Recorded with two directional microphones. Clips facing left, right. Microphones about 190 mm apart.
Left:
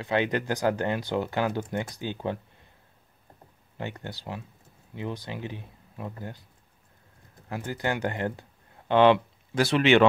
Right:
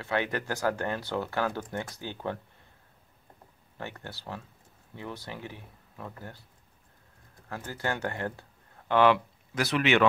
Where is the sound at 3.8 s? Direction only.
15° left (ahead or behind).